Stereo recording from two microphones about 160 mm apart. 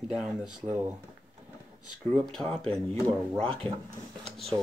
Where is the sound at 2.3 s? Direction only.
5° left (ahead or behind).